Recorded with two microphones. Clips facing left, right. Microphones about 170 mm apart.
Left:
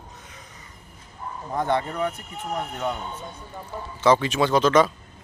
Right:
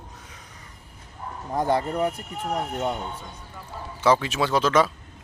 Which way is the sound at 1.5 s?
35° right (ahead or behind).